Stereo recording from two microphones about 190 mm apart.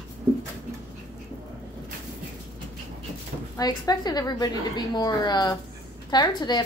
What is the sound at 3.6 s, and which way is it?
A woman's voice, 20° left (ahead or behind).